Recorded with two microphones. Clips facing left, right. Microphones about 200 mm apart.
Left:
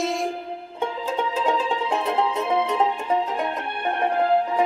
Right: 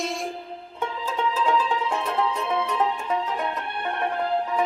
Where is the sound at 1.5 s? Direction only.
20° left (ahead or behind).